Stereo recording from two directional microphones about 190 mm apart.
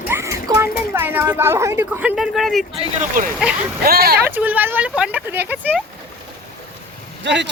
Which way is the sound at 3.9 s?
55° right (ahead or behind).